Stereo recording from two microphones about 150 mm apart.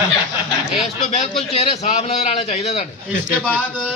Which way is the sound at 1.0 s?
45° left (ahead or behind).